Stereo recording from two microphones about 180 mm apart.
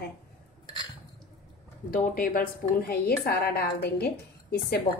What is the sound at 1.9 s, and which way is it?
A woman's voice, 55° left (ahead or behind).